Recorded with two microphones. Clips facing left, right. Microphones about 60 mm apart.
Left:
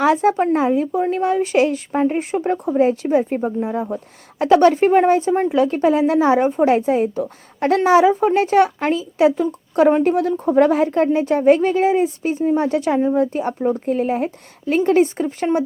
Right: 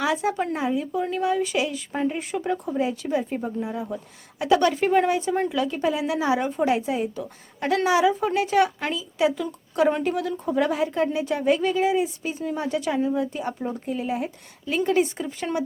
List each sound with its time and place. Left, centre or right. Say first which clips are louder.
0.0 s a woman's voice: left 8 dB; left